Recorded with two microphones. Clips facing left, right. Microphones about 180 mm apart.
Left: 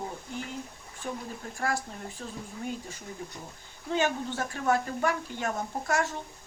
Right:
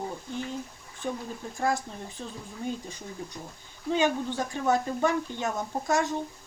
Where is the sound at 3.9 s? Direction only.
15° right (ahead or behind).